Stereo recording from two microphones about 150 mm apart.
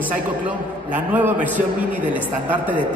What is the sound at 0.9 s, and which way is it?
Speech, 10° right (ahead or behind).